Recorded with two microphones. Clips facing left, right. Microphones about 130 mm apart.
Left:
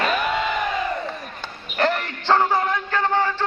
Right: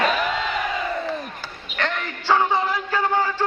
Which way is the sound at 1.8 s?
5° left (ahead or behind).